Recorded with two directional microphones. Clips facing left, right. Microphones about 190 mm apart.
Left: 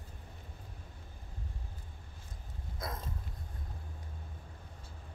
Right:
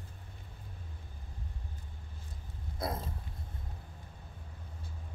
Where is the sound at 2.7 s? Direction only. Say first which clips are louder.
Right 5 dB; 30° right (ahead or behind).